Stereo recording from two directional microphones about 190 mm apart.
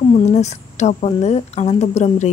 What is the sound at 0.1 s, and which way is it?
A woman's voice, 35° left (ahead or behind).